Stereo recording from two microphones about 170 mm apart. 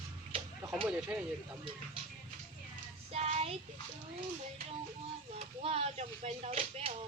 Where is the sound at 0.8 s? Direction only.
5° right (ahead or behind).